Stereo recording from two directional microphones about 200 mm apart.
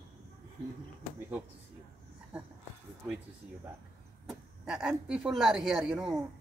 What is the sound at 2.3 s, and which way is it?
Speech, 5° right (ahead or behind).